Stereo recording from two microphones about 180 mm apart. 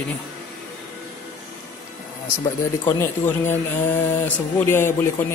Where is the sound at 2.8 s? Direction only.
10° left (ahead or behind).